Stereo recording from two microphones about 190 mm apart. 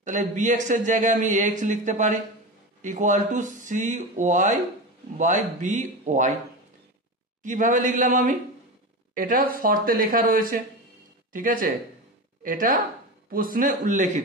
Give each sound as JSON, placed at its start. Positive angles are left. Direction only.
{"t": 0.0, "sound": "a man's voice", "side_deg": -40}
{"t": 7.4, "sound": "a man's voice", "side_deg": -45}